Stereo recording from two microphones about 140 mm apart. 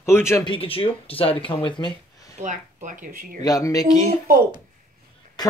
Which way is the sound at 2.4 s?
65° right (ahead or behind).